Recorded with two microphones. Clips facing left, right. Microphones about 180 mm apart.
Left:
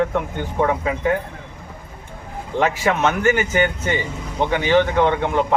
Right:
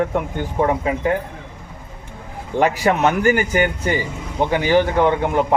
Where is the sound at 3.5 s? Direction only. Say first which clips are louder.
Right 1 dB; 10° right (ahead or behind).